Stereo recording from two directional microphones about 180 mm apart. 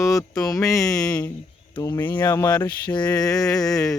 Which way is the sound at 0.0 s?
20° left (ahead or behind).